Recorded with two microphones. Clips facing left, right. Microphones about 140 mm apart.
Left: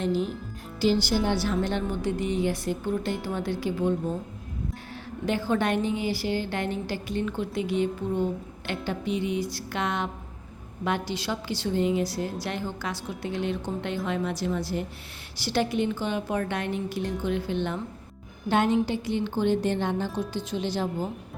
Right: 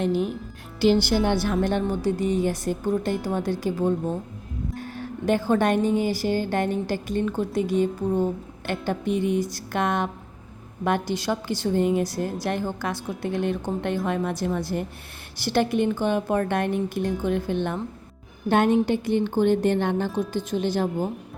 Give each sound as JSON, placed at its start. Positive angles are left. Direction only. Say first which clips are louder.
{"t": 0.0, "sound": "a woman's voice", "louder": "right 3 dB", "side_deg": -55}
{"t": 4.9, "sound": "a woman's voice", "louder": "right 5 dB", "side_deg": -45}